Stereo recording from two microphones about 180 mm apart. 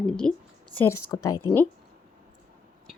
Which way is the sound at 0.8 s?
15° left (ahead or behind).